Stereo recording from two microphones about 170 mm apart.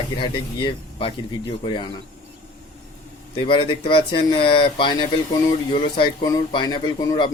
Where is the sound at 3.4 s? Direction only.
30° left (ahead or behind).